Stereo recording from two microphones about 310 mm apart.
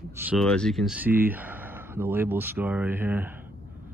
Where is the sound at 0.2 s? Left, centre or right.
Centre.